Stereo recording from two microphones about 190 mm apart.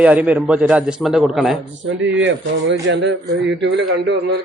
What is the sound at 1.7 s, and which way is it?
A man's voice, 75° right (ahead or behind).